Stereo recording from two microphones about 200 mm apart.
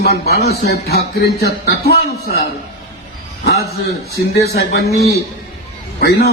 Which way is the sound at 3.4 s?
55° left (ahead or behind).